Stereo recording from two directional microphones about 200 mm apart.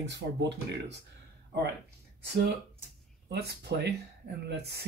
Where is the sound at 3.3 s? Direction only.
55° right (ahead or behind).